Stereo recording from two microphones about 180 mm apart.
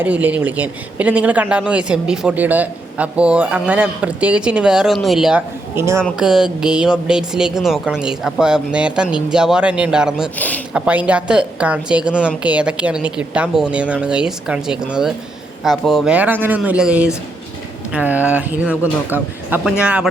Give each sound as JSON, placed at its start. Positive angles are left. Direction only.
{"t": 0.0, "sound": "speech", "side_deg": -10}
{"t": 5.7, "sound": "speech", "side_deg": -15}
{"t": 6.0, "sound": "speech", "side_deg": 0}
{"t": 10.3, "sound": "speech", "side_deg": 10}
{"t": 10.8, "sound": "speech", "side_deg": -5}